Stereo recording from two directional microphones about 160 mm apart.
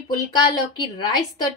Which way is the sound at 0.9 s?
30° left (ahead or behind).